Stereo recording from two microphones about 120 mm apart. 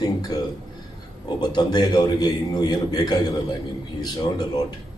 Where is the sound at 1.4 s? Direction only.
35° left (ahead or behind).